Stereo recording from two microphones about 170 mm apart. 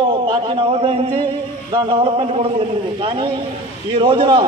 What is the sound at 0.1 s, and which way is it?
A man's voice, 30° right (ahead or behind).